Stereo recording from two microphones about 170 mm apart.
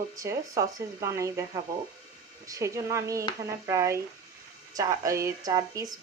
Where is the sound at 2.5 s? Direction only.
20° right (ahead or behind).